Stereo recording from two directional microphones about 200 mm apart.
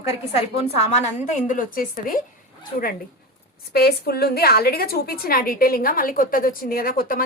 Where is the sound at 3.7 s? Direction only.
50° left (ahead or behind).